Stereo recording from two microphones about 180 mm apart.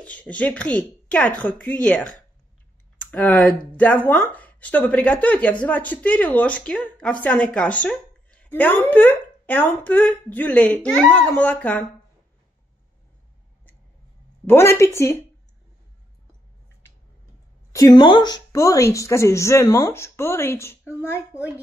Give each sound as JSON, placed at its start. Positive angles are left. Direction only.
{"t": 0.0, "sound": "a woman's voice", "side_deg": 5}
{"t": 14.4, "sound": "speech", "side_deg": 15}
{"t": 17.7, "sound": "speech", "side_deg": 25}